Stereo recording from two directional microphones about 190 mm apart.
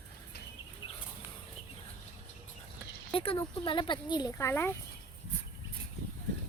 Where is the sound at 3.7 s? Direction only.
25° left (ahead or behind).